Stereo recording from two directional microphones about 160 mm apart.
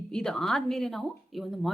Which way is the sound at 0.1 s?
5° left (ahead or behind).